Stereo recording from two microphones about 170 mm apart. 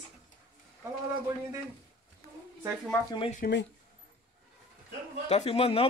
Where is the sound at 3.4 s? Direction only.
60° left (ahead or behind).